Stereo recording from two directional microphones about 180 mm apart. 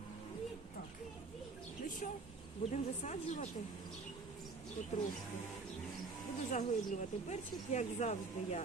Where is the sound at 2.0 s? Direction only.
45° left (ahead or behind).